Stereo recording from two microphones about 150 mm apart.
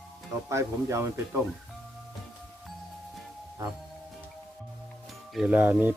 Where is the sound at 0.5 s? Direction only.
20° right (ahead or behind).